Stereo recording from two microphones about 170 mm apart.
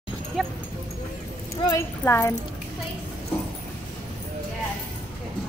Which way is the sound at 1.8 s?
15° left (ahead or behind).